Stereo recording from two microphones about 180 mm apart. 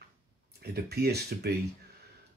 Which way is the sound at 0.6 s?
65° right (ahead or behind).